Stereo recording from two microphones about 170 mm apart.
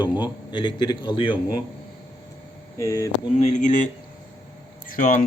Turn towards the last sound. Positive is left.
turn(degrees=50)  # may be behind; listen again after turning